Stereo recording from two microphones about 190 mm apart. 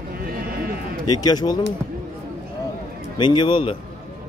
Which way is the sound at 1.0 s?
20° left (ahead or behind).